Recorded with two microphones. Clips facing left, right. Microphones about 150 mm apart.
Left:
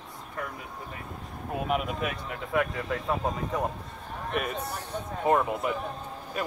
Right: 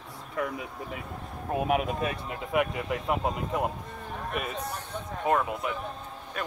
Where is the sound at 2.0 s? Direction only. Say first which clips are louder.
Right 1 dB; 30° right (ahead or behind).